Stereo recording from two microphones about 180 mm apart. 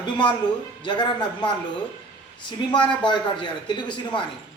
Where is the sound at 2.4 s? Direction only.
25° left (ahead or behind).